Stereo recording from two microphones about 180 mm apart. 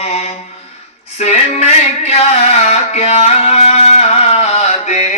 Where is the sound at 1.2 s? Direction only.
35° left (ahead or behind).